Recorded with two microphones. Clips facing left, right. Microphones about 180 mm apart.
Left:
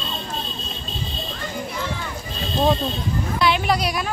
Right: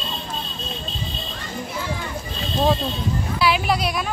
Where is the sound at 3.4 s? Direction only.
5° right (ahead or behind).